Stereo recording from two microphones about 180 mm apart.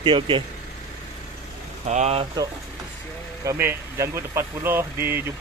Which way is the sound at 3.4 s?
10° right (ahead or behind).